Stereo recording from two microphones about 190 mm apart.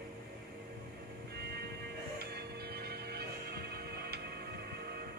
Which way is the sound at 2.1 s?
55° right (ahead or behind).